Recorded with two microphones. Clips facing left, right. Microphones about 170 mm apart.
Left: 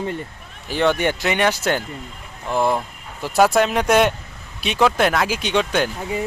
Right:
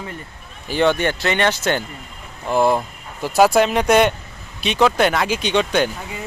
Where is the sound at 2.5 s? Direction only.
5° right (ahead or behind).